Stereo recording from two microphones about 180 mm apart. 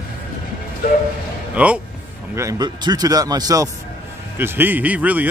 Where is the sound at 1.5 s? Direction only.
5° right (ahead or behind).